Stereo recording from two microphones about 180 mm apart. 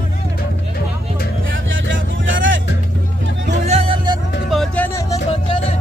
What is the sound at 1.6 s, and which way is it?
Vehicle, 90° right.